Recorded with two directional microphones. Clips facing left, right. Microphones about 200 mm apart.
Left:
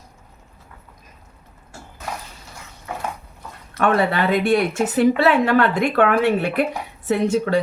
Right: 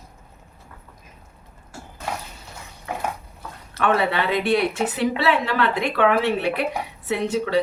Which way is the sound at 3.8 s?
45° left (ahead or behind).